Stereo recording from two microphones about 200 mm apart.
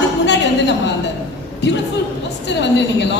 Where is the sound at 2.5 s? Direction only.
60° left (ahead or behind).